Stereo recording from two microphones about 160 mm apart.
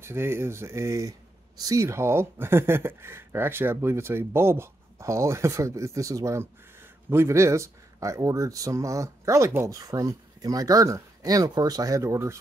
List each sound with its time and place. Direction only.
0.0 s speech: 15° right (ahead or behind)